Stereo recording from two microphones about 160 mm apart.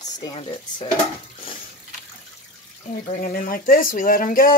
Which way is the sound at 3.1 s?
60° left (ahead or behind).